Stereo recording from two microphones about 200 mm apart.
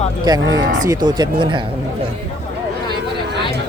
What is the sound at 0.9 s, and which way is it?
Speech, 20° right (ahead or behind).